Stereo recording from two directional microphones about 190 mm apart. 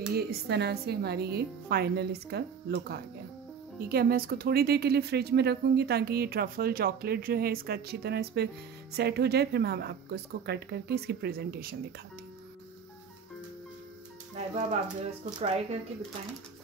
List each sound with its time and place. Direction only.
0.1 s speech: 55° right (ahead or behind)
14.3 s speech: 35° right (ahead or behind)